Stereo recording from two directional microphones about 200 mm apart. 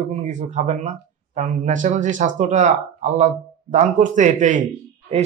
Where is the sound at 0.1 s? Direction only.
35° right (ahead or behind).